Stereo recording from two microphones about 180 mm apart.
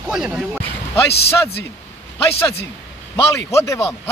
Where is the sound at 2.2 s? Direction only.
15° left (ahead or behind).